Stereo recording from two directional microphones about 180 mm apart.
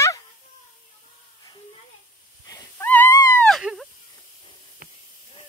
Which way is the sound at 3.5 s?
Centre (ahead or behind).